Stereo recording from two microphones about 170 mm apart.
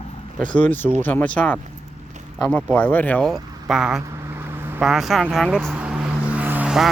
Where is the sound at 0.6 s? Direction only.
10° left (ahead or behind).